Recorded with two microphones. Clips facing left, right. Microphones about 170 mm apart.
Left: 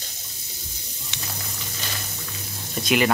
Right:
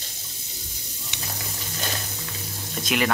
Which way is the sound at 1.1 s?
15° right (ahead or behind).